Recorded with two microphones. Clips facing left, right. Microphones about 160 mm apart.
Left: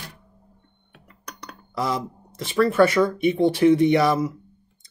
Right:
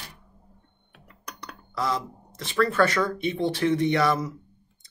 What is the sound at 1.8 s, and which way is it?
Speech, 15° left (ahead or behind).